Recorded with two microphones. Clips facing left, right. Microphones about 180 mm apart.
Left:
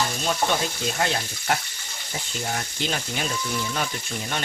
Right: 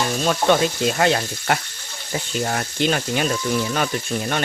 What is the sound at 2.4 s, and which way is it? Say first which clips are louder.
Speech: right 7 dB; 65° right (ahead or behind).